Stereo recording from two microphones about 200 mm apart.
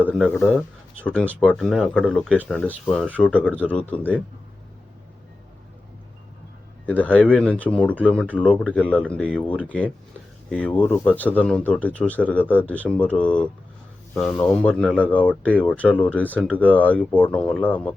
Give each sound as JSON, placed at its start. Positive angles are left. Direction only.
{"t": 0.0, "sound": "speech", "side_deg": 5}
{"t": 6.8, "sound": "speech", "side_deg": 10}